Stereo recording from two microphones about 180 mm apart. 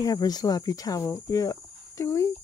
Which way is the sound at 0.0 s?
20° left (ahead or behind).